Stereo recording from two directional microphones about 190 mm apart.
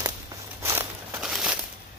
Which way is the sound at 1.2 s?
5° right (ahead or behind).